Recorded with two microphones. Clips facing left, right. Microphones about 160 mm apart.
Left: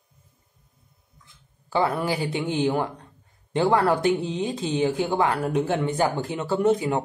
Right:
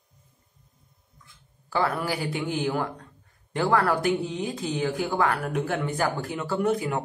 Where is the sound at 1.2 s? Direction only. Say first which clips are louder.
Right 1 dB; 20° left (ahead or behind).